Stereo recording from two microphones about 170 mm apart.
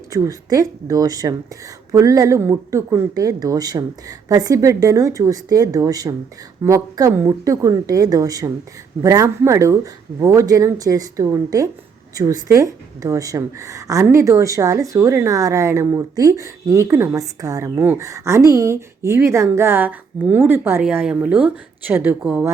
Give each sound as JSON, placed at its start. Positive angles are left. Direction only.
{"t": 0.1, "sound": "a woman's voice", "side_deg": -20}